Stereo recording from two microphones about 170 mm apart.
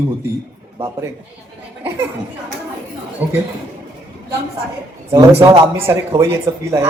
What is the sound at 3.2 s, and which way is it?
Speech, 10° right (ahead or behind).